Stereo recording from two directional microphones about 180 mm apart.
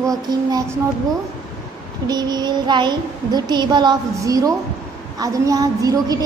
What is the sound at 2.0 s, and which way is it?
Child singing, 25° right (ahead or behind).